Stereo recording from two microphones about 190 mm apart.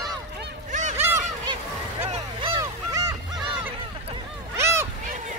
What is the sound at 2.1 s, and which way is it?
Boat, 30° right (ahead or behind).